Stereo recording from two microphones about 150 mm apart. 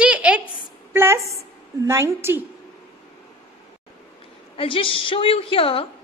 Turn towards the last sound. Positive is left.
turn(degrees=40)  # may be behind; listen again after turning